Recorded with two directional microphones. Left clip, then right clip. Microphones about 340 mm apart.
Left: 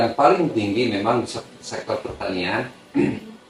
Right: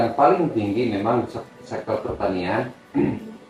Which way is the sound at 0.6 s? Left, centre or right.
Right.